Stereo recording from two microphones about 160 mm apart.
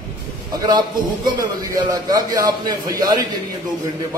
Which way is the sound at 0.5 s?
25° right (ahead or behind).